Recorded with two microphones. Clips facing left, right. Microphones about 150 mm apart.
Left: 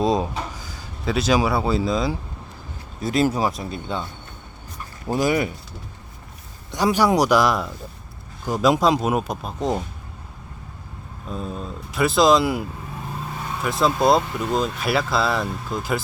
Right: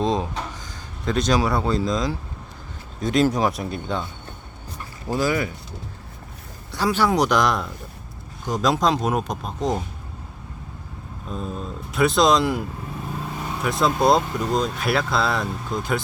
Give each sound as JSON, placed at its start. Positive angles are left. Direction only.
{"t": 0.0, "sound": "speech", "side_deg": 10}
{"t": 5.0, "sound": "speech", "side_deg": 15}
{"t": 6.7, "sound": "speech", "side_deg": 15}
{"t": 11.3, "sound": "speech", "side_deg": 0}
{"t": 13.7, "sound": "speech", "side_deg": 0}